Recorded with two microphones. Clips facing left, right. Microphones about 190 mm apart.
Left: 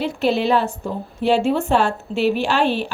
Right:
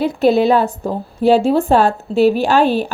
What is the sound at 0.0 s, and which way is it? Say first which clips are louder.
A woman's voice: right 6 dB; 40° right (ahead or behind).